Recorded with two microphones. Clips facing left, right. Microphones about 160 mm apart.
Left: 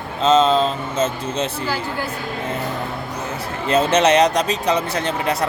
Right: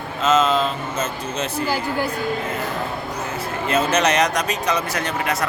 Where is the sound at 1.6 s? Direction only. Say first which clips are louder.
Right 2 dB; 10° right (ahead or behind).